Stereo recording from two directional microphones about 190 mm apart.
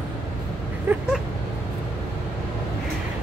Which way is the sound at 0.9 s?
10° right (ahead or behind).